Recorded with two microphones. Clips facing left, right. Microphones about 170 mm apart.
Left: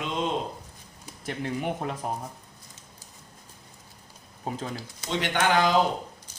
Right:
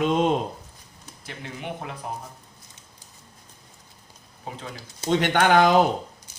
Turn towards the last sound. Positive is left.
turn(degrees=-55)  # may be behind; listen again after turning